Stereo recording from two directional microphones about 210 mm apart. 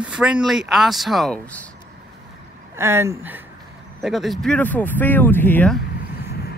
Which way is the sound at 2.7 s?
10° right (ahead or behind).